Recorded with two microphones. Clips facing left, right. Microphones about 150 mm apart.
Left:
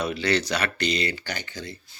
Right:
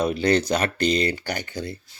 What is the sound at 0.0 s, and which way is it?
Speech, 45° right (ahead or behind).